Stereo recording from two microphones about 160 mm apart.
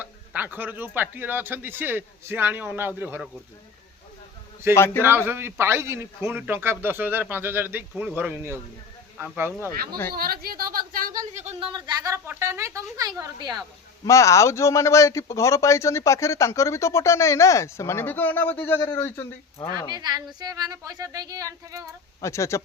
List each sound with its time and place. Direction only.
0.0 s a man's voice: 10° right (ahead or behind)
4.7 s a man's voice: 15° left (ahead or behind)
5.0 s a man's voice: 15° right (ahead or behind)
10.2 s speech: 70° right (ahead or behind); by 11.7 s 45° right (ahead or behind)
11.7 s speech: 25° right (ahead or behind)
14.0 s a man's voice: 20° left (ahead or behind)
19.9 s speech: 25° right (ahead or behind)
22.2 s speech: 20° left (ahead or behind)